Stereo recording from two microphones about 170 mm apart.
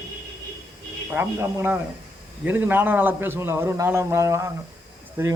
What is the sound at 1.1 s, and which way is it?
A man's voice, 10° right (ahead or behind).